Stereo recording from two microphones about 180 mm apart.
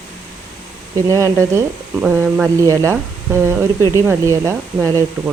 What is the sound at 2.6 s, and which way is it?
Speech, 15° right (ahead or behind).